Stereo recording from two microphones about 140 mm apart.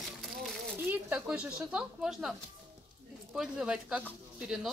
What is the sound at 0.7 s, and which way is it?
Speech, 15° right (ahead or behind).